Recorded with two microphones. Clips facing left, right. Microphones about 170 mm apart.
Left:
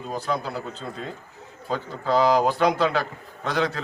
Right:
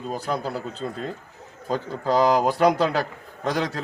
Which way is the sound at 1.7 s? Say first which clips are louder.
Right 1 dB; 40° right (ahead or behind).